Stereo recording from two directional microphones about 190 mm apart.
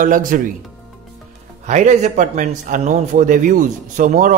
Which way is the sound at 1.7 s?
40° right (ahead or behind).